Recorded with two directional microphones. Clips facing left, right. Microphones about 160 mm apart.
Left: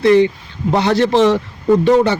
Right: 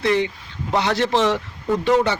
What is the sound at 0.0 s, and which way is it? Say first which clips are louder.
Speech: left 9 dB; 40° left (ahead or behind).